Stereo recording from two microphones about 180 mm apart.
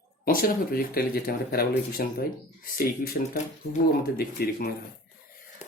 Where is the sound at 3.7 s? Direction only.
55° left (ahead or behind).